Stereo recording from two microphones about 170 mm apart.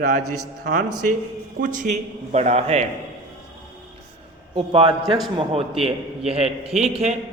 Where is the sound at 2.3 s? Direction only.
40° right (ahead or behind).